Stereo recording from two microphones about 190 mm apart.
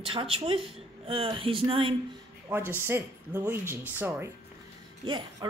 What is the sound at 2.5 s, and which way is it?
A woman's voice, 10° right (ahead or behind).